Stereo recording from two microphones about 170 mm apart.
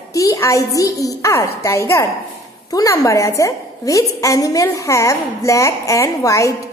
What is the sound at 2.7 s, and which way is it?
A woman's voice, 20° left (ahead or behind).